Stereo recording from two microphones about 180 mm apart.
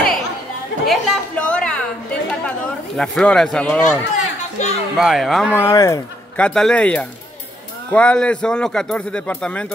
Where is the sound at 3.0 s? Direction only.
5° left (ahead or behind).